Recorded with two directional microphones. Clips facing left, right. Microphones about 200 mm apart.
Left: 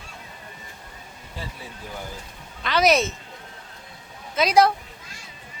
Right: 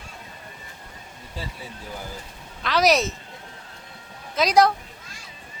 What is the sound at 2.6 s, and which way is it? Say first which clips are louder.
Speech: even; centre (ahead or behind).